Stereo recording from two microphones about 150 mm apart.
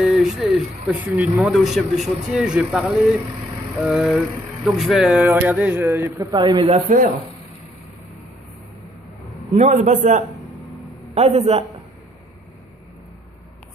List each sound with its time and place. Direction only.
0.0 s a sound: 5° right (ahead or behind)
0.9 s a man's voice: 10° right (ahead or behind)
6.3 s a man's voice: 30° right (ahead or behind)
9.6 s a man's voice: 50° right (ahead or behind)